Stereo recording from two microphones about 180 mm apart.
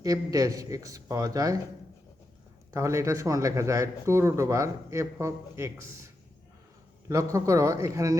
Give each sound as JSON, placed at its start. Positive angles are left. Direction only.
{"t": 0.0, "sound": "speech", "side_deg": -20}
{"t": 2.7, "sound": "speech", "side_deg": -15}
{"t": 7.1, "sound": "speech", "side_deg": -15}